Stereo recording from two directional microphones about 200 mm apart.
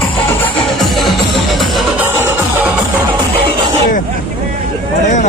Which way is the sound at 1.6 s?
10° right (ahead or behind).